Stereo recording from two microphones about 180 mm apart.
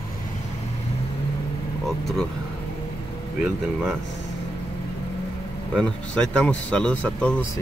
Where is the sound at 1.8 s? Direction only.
Centre (ahead or behind).